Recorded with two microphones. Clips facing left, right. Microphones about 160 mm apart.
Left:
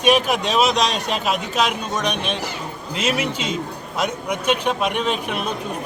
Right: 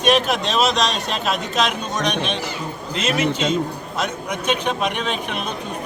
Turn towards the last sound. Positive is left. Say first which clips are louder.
# left 2 dB
turn(degrees=5)  # may be behind; listen again after turning